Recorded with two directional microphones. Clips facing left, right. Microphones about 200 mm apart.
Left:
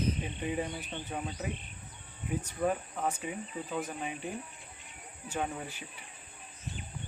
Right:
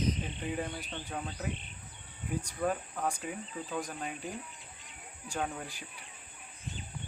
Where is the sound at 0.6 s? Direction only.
10° left (ahead or behind).